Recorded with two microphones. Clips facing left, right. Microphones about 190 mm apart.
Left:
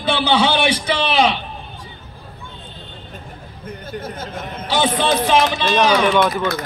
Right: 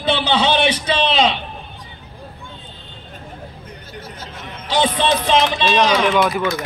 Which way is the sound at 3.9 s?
50° left (ahead or behind).